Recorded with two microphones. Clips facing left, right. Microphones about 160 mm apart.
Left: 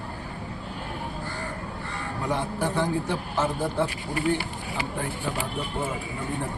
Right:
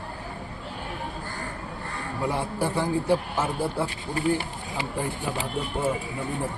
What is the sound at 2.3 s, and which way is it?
Speech, 10° right (ahead or behind).